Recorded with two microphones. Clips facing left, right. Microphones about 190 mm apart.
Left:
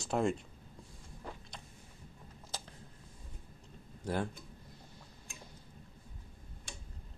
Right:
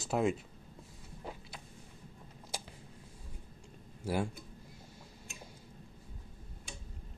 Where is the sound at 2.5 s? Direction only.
10° right (ahead or behind).